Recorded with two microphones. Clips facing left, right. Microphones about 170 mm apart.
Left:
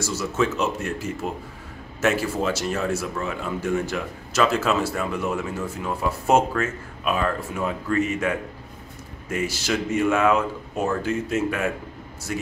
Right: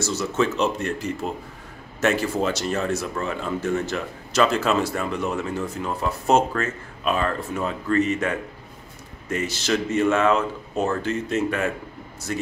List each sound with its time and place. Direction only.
0.0 s speech: 10° left (ahead or behind)